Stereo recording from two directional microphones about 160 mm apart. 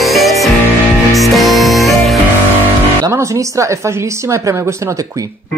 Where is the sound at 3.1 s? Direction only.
20° right (ahead or behind).